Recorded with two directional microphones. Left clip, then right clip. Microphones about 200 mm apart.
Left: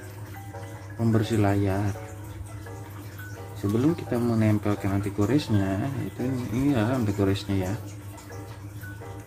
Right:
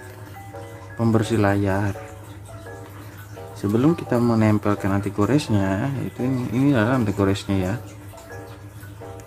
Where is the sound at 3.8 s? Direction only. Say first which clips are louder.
Right 6 dB; 25° right (ahead or behind).